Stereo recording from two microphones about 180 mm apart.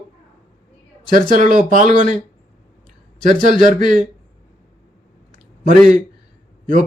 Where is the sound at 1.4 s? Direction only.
45° right (ahead or behind).